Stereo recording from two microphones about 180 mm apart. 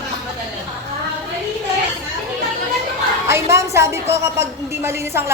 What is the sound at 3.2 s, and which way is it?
A woman's voice, 15° right (ahead or behind).